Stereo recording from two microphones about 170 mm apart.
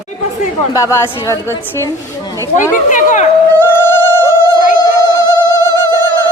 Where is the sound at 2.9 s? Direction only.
45° left (ahead or behind).